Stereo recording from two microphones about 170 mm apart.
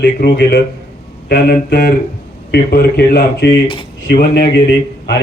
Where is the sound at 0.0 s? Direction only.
80° left.